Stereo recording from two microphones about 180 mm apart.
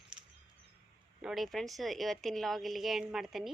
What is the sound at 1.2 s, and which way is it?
A woman's voice, centre (ahead or behind).